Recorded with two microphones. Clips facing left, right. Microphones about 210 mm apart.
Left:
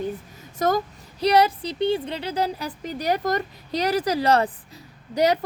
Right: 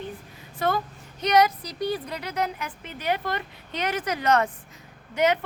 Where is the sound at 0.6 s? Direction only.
40° left (ahead or behind).